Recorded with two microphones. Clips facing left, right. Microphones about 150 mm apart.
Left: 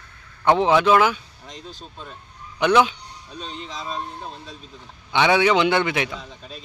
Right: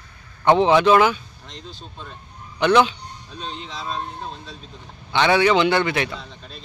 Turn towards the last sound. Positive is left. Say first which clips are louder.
# even
turn(degrees=5)  # may be behind; listen again after turning